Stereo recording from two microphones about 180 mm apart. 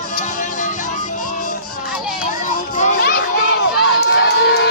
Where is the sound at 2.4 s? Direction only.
40° left (ahead or behind).